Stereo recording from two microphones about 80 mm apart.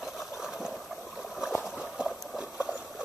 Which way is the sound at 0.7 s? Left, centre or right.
Centre.